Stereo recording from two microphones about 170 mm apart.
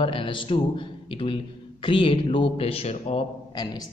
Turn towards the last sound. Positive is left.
turn(degrees=35)  # may be behind; listen again after turning